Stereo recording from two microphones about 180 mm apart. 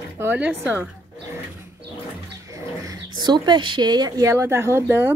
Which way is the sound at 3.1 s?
25° right (ahead or behind).